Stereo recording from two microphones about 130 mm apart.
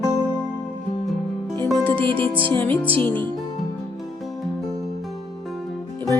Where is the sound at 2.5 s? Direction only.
15° left (ahead or behind).